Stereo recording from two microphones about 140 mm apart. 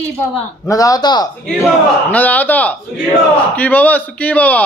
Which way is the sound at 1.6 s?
10° left (ahead or behind).